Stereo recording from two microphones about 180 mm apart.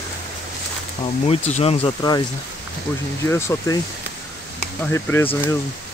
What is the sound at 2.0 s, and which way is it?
Speech, 20° left (ahead or behind).